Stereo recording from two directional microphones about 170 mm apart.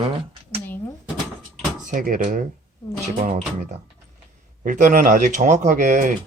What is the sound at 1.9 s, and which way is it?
Speech, 55° right (ahead or behind).